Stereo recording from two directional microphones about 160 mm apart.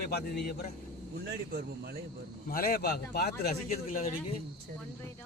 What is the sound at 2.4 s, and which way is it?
A man's voice, 65° left (ahead or behind).